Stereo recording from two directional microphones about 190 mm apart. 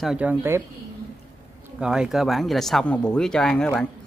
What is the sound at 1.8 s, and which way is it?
Speech, 5° right (ahead or behind).